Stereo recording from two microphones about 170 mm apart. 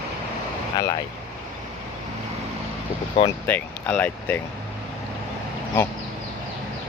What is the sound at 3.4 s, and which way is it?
Speech, 10° left (ahead or behind).